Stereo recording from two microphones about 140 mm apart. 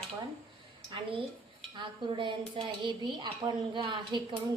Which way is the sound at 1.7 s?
35° right (ahead or behind).